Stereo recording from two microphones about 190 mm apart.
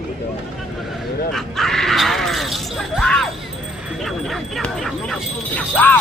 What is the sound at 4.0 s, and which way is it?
Speech, centre (ahead or behind).